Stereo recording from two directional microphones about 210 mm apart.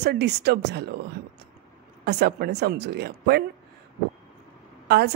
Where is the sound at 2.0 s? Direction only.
50° right (ahead or behind).